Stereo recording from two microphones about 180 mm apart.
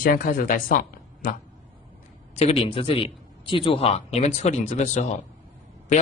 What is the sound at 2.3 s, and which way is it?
A man's voice, 35° left (ahead or behind).